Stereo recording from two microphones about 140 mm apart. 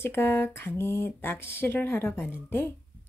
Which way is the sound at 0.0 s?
15° left (ahead or behind).